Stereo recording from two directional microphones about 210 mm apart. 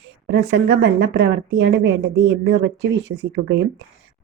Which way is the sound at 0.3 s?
55° right (ahead or behind).